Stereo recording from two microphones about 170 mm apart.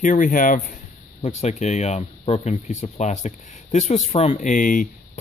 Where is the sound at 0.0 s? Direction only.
50° left (ahead or behind).